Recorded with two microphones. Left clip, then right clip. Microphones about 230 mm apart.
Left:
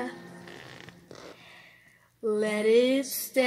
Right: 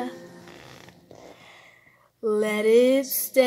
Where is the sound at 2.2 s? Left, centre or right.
Right.